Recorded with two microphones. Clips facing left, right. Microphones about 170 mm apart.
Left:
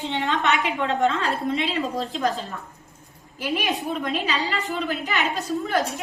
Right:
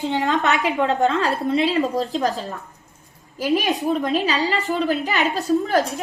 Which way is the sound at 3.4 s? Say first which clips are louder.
Right 5 dB; 40° right (ahead or behind).